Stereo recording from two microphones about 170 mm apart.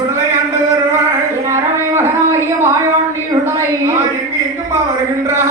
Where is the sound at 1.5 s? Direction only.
15° right (ahead or behind).